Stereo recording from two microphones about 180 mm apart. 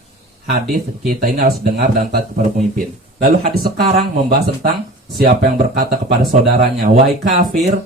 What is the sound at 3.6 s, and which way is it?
Speech, 55° right (ahead or behind).